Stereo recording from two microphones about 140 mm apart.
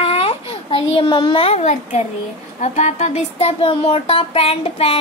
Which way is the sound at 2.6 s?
55° left (ahead or behind).